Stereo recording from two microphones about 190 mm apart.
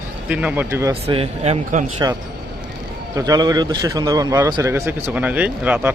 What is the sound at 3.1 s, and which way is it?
A man's voice, 20° right (ahead or behind).